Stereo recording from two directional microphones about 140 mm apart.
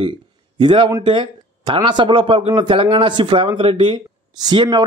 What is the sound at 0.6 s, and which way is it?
Speech, 35° right (ahead or behind).